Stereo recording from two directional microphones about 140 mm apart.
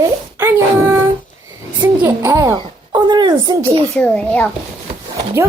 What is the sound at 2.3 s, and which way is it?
Speech, 25° right (ahead or behind).